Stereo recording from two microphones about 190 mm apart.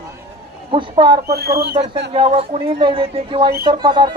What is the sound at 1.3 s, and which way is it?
Speech, 55° right (ahead or behind).